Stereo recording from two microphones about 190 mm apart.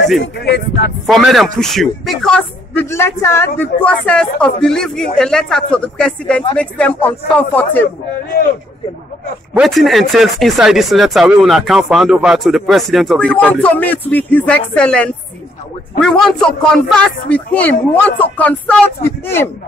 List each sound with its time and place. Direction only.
0.2 s speech: 60° left (ahead or behind)
1.0 s a man's voice: centre (ahead or behind)
9.5 s a man's voice: centre (ahead or behind)